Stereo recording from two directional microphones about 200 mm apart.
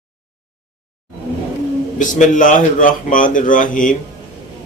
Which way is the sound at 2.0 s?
40° left (ahead or behind).